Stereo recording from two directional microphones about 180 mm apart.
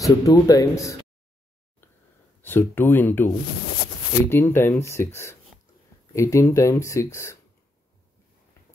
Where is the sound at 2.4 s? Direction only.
10° left (ahead or behind).